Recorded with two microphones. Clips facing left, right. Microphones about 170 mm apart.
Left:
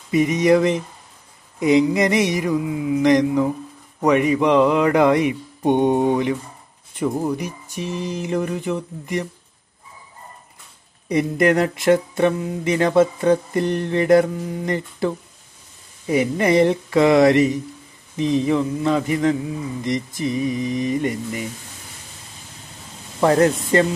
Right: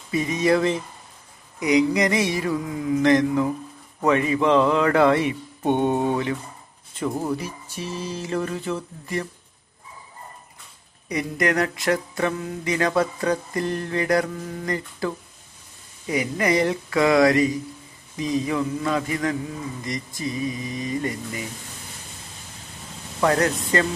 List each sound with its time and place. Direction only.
0.1 s speech: 20° left (ahead or behind)
11.1 s speech: 30° left (ahead or behind)
23.2 s speech: 25° left (ahead or behind)